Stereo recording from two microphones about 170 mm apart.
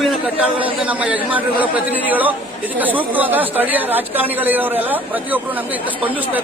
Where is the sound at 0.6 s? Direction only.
10° right (ahead or behind).